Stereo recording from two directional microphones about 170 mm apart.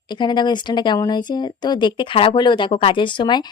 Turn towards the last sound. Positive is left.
turn(degrees=25)  # may be behind; listen again after turning